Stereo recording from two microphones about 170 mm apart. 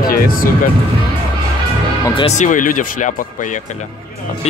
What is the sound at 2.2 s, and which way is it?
Speech, 45° left (ahead or behind).